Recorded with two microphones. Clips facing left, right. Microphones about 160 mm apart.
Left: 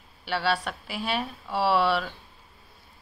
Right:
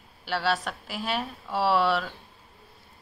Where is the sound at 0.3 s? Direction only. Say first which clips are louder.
Even; centre (ahead or behind).